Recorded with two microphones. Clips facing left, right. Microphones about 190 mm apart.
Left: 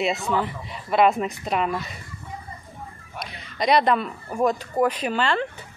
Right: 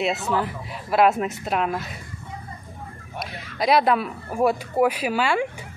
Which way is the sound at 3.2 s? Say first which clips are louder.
Right 3 dB; centre (ahead or behind).